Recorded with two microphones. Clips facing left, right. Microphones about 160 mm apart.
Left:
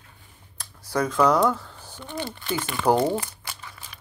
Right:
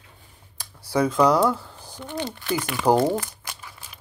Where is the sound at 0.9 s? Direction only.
10° right (ahead or behind).